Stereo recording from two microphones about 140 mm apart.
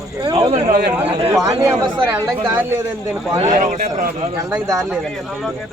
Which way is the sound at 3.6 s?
60° right (ahead or behind).